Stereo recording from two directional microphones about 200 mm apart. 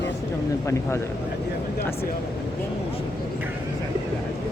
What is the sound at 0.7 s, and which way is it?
Speech, 15° left (ahead or behind).